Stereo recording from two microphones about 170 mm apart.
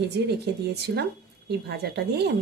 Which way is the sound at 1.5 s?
70° right (ahead or behind).